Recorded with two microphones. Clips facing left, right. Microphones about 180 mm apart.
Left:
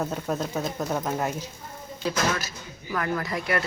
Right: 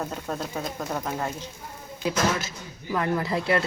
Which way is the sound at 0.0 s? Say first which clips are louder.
Left 3 dB; 5° left (ahead or behind).